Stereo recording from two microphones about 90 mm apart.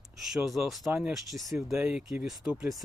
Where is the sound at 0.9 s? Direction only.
25° right (ahead or behind).